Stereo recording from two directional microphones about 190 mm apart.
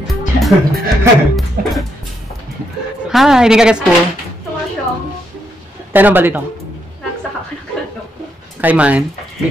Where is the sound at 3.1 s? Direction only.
Centre (ahead or behind).